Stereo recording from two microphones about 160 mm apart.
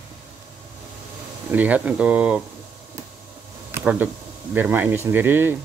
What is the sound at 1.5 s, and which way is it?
Speech, 10° right (ahead or behind).